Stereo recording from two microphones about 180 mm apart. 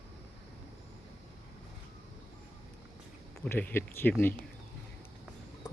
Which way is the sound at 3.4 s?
10° left (ahead or behind).